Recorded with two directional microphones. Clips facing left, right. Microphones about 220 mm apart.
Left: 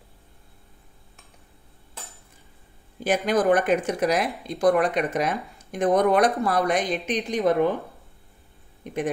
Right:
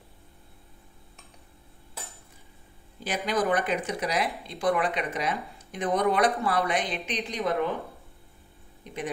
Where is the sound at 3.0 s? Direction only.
50° left (ahead or behind).